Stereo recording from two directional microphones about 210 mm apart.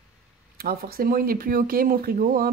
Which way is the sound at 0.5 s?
45° right (ahead or behind).